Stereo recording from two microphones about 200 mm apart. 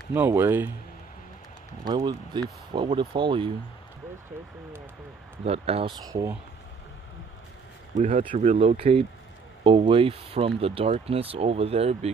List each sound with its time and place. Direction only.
0.1 s speech: 10° right (ahead or behind)
1.9 s speech: 20° right (ahead or behind)
5.4 s speech: 30° right (ahead or behind)
7.9 s speech: 30° right (ahead or behind)